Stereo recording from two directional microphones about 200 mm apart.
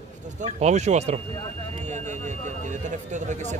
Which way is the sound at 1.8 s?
35° right (ahead or behind).